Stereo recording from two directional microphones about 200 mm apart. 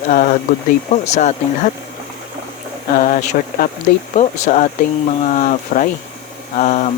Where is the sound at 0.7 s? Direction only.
35° left (ahead or behind).